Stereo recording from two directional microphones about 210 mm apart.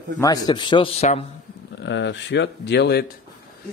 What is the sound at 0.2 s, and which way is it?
A man's voice, 20° left (ahead or behind).